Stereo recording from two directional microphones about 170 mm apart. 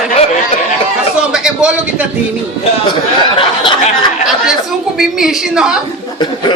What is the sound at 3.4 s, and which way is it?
Speech, 30° left (ahead or behind).